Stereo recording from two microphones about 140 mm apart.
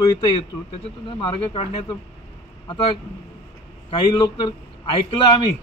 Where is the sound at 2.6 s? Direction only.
35° left (ahead or behind).